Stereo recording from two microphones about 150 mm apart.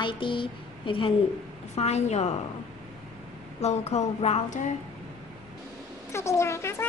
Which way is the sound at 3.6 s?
45° left (ahead or behind).